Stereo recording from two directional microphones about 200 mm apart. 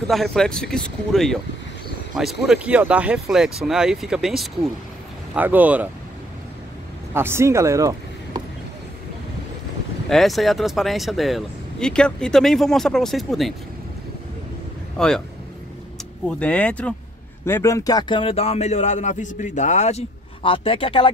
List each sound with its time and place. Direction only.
0.1 s speech: centre (ahead or behind)
7.2 s speech: 10° right (ahead or behind)
10.0 s speech: centre (ahead or behind)
15.0 s speech: 5° left (ahead or behind)
16.3 s speech: 5° left (ahead or behind); by 21.1 s 25° left (ahead or behind)